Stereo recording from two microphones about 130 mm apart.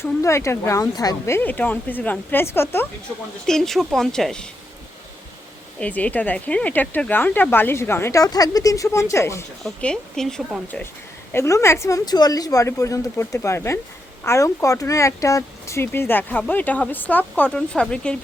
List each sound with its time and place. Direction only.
0.0 s speech: 20° left (ahead or behind)
1.4 s speech: 15° left (ahead or behind)
3.4 s speech: 5° left (ahead or behind)
5.8 s speech: 10° left (ahead or behind)
9.6 s speech: 5° left (ahead or behind)
11.3 s speech: 20° left (ahead or behind)